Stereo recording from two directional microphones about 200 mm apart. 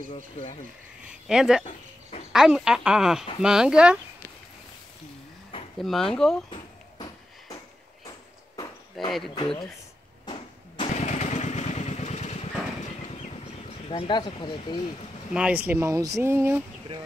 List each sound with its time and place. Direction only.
0.1 s speech: 35° left (ahead or behind)
1.2 s speech: 5° right (ahead or behind)
5.8 s speech: centre (ahead or behind)
9.0 s speech: centre (ahead or behind)
9.3 s speech: 20° left (ahead or behind)
10.2 s motorcycle: 25° left (ahead or behind)
13.8 s speech: 25° left (ahead or behind)
15.3 s speech: 5° right (ahead or behind)